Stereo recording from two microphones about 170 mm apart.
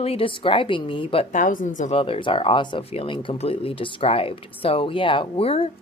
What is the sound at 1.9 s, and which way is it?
Speech, 30° left (ahead or behind).